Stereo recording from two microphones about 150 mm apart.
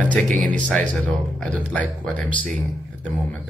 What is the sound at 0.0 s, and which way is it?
Speech, 10° left (ahead or behind).